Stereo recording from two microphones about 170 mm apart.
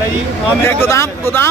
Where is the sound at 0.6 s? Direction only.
15° left (ahead or behind).